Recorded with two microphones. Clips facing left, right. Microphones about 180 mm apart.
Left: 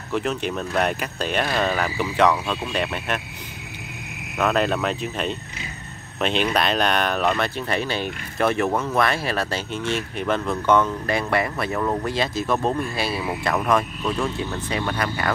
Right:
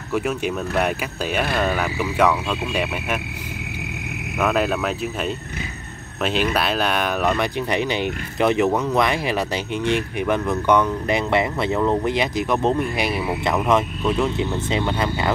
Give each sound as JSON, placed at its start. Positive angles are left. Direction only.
{"t": 0.1, "sound": "speech", "side_deg": -10}
{"t": 4.4, "sound": "speech", "side_deg": -5}